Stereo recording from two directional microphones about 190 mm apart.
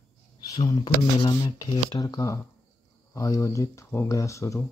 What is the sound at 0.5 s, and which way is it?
Speech, 20° left (ahead or behind).